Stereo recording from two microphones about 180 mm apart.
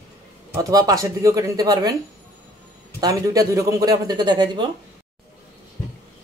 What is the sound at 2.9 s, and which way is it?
A man's voice, 20° right (ahead or behind).